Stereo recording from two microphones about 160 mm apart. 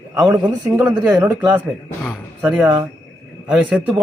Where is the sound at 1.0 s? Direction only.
10° right (ahead or behind).